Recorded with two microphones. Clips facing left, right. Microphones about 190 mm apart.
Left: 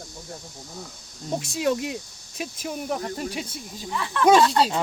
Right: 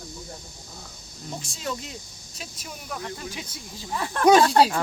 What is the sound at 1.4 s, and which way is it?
Speech, 60° left (ahead or behind).